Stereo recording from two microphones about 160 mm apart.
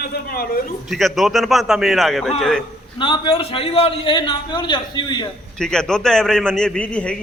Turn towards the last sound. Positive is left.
turn(degrees=5)  # may be behind; listen again after turning